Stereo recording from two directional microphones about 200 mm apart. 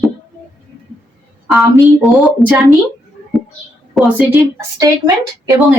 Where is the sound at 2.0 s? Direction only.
Centre (ahead or behind).